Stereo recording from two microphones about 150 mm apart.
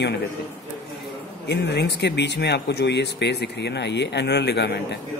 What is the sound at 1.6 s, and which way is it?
Speech, 90° left.